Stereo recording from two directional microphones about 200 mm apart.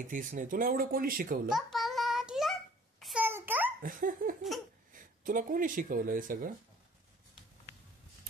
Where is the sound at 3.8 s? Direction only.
45° right (ahead or behind).